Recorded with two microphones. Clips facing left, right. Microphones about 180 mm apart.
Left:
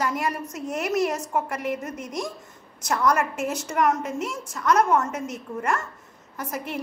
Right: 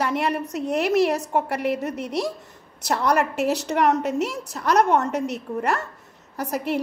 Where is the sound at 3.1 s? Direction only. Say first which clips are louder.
Right 5 dB; 70° right (ahead or behind).